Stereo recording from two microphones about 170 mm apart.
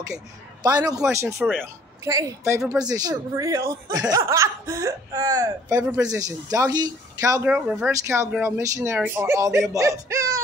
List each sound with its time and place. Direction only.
0.6 s a man's voice: 25° right (ahead or behind)
7.5 s speech: 10° right (ahead or behind)